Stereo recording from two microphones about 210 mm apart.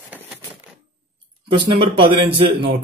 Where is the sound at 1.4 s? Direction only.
25° right (ahead or behind).